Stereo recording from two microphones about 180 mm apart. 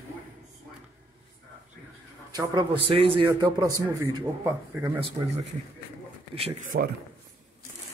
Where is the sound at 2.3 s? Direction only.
25° right (ahead or behind).